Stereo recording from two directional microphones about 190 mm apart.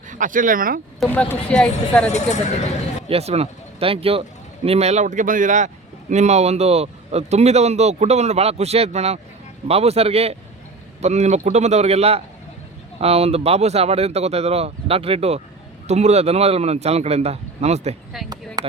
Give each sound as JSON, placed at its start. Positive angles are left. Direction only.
{"t": 0.1, "sound": "speech", "side_deg": -45}
{"t": 0.9, "sound": "speech", "side_deg": 5}
{"t": 3.1, "sound": "speech", "side_deg": -35}
{"t": 18.3, "sound": "speech", "side_deg": -20}